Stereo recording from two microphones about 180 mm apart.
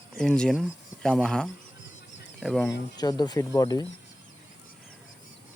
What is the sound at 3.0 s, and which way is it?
Speech, 20° left (ahead or behind).